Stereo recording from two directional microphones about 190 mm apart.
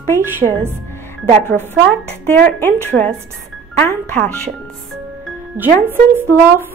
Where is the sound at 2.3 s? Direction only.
10° left (ahead or behind).